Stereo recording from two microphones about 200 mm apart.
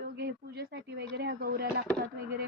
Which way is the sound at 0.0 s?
50° right (ahead or behind).